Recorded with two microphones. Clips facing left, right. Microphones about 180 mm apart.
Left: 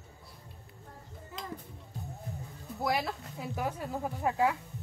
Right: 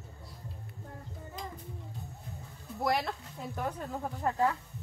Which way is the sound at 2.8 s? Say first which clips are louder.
Right 1 dB; centre (ahead or behind).